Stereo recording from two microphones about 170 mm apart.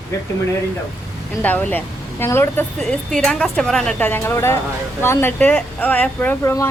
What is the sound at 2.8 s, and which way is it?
Speech, centre (ahead or behind).